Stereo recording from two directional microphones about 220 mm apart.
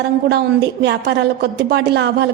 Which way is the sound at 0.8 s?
50° right (ahead or behind).